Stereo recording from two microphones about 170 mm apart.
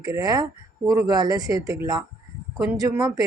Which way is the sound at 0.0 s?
20° right (ahead or behind).